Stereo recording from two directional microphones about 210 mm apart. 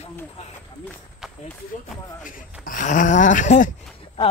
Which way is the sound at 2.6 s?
40° left (ahead or behind).